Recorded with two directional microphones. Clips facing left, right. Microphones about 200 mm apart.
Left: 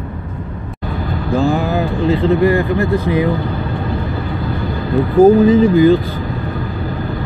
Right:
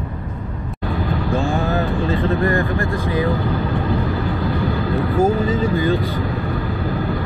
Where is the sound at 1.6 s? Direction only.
15° left (ahead or behind).